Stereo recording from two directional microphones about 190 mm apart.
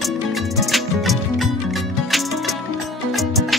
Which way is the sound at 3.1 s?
Centre (ahead or behind).